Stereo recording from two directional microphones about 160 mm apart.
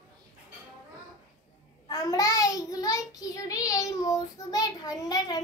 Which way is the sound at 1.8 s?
20° left (ahead or behind).